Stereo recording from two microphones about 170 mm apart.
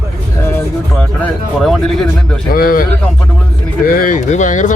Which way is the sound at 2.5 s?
60° left (ahead or behind).